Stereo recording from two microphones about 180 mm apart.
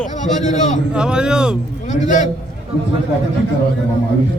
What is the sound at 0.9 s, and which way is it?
Speech, 5° right (ahead or behind).